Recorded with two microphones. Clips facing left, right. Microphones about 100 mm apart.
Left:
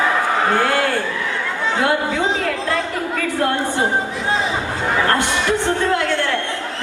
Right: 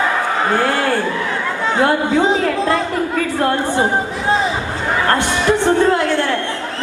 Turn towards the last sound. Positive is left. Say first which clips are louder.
# right 4 dB
turn(degrees=-20)  # may be behind; listen again after turning